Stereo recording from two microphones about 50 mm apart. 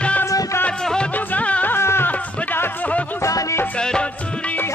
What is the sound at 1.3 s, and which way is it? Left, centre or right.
Music, left.